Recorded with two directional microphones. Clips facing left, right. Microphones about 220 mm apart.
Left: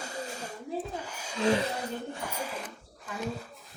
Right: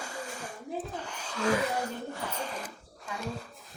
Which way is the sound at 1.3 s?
25° left (ahead or behind).